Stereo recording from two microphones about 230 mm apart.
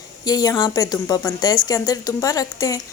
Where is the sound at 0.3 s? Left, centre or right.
Centre.